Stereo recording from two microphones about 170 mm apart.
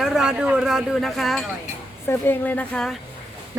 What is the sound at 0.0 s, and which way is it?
Speech, 5° right (ahead or behind).